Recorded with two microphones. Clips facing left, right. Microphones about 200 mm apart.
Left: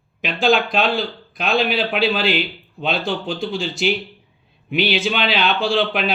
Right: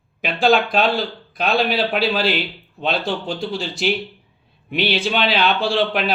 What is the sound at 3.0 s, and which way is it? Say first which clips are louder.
Speech: even; 40° right (ahead or behind).